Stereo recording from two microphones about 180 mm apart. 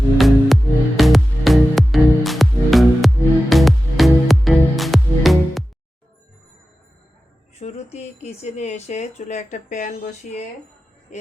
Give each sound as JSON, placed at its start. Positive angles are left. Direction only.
{"t": 0.2, "sound": "music", "side_deg": 0}
{"t": 7.6, "sound": "speech", "side_deg": 35}